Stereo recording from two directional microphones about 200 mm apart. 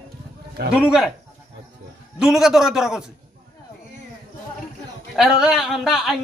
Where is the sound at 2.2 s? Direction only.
Centre (ahead or behind).